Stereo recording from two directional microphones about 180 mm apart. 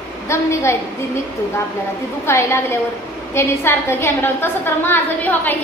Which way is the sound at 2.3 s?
15° left (ahead or behind).